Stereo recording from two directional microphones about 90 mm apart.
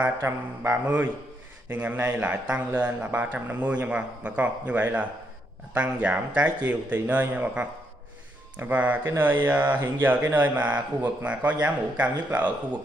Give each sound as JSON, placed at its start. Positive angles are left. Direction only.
{"t": 0.2, "sound": "speech", "side_deg": -20}